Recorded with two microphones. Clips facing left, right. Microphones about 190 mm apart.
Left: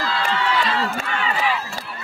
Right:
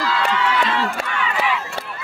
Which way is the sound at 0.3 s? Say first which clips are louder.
Right 1 dB; 35° left (ahead or behind).